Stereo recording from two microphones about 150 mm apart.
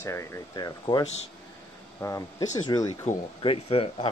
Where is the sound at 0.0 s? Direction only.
20° left (ahead or behind).